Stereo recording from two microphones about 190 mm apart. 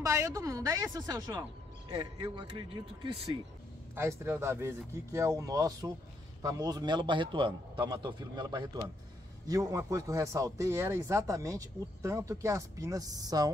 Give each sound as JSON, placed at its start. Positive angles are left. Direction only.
{"t": 0.0, "sound": "a man's voice", "side_deg": -15}
{"t": 3.9, "sound": "a man's voice", "side_deg": -15}